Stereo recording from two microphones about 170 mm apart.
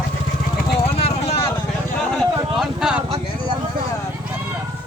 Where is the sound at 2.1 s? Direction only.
Centre (ahead or behind).